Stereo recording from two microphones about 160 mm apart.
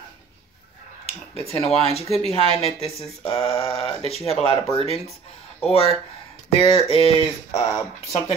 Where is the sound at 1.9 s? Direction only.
40° left (ahead or behind).